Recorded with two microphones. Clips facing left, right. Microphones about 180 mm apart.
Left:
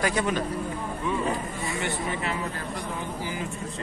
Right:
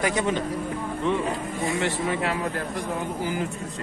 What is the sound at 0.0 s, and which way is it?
Speech, 20° right (ahead or behind).